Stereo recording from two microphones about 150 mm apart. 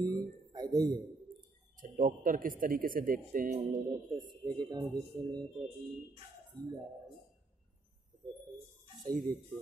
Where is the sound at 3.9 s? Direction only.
30° right (ahead or behind).